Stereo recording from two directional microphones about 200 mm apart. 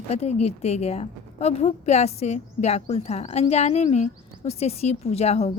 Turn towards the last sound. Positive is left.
turn(degrees=35)  # may be behind; listen again after turning